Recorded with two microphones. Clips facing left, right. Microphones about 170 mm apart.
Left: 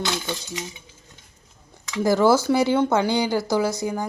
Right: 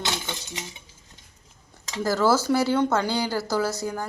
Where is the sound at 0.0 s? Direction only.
20° right (ahead or behind).